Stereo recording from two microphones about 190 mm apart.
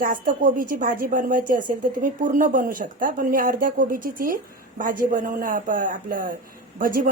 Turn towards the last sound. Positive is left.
turn(degrees=-45)  # may be behind; listen again after turning